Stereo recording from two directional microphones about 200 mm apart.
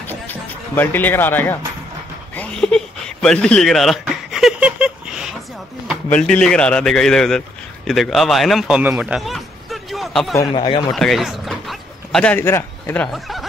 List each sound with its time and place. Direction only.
0.7 s speech: 10° left (ahead or behind)
2.3 s a sound: 5° left (ahead or behind)
6.1 s a man's voice: 5° left (ahead or behind)
10.5 s speech: 25° left (ahead or behind)
10.9 s speech: centre (ahead or behind)